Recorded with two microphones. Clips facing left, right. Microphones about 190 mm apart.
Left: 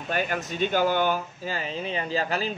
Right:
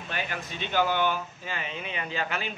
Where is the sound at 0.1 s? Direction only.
45° left (ahead or behind).